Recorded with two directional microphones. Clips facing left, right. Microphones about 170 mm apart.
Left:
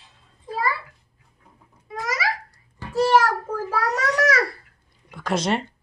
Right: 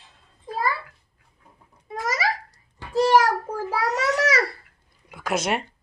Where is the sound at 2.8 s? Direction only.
15° right (ahead or behind).